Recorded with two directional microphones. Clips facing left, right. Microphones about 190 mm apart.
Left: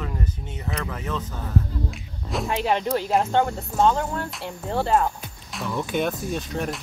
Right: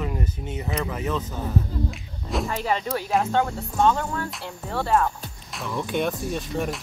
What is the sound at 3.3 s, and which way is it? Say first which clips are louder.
Speech: left 2 dB; 30° left (ahead or behind).